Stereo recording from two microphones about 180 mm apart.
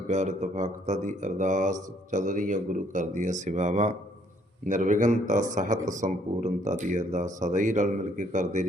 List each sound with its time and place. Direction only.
0.1 s speech: 40° right (ahead or behind)